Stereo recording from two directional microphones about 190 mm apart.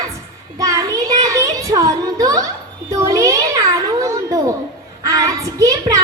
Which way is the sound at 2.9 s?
15° right (ahead or behind).